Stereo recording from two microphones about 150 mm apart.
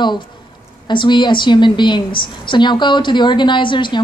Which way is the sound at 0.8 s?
30° left (ahead or behind).